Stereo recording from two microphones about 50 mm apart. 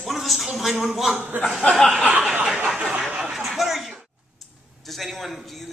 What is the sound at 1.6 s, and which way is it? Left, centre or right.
Chuckle, centre.